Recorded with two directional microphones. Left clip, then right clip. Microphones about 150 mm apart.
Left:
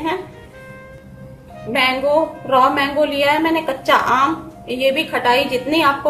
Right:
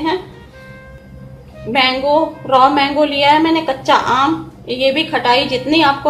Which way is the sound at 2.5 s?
25° right (ahead or behind).